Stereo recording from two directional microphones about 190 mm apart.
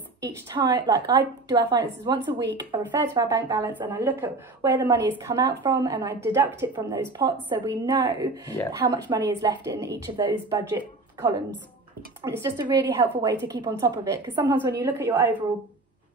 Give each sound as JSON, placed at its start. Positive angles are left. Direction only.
{"t": 0.2, "sound": "a woman's voice", "side_deg": -20}
{"t": 12.3, "sound": "a woman's voice", "side_deg": -15}